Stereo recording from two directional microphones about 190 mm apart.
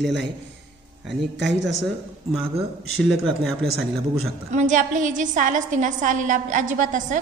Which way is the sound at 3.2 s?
5° left (ahead or behind).